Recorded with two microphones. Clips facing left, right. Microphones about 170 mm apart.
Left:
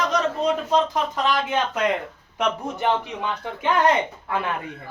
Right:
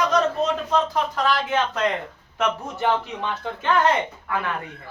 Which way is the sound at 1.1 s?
20° left (ahead or behind).